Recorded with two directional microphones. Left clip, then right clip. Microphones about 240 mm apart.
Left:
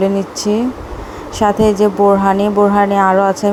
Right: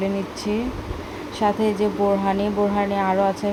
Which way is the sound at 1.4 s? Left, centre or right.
Left.